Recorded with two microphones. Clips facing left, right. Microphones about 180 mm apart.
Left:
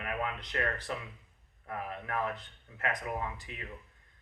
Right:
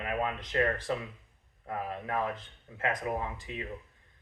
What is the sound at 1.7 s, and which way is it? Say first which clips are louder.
Speech: right 3 dB; 20° right (ahead or behind).